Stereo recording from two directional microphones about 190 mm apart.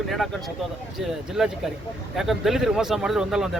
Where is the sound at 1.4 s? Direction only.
Centre (ahead or behind).